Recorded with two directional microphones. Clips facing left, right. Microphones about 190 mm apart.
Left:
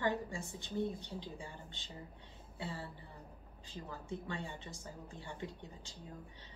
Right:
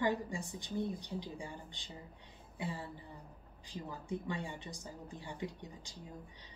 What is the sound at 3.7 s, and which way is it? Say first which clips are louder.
A woman's voice: right 3 dB; 15° right (ahead or behind).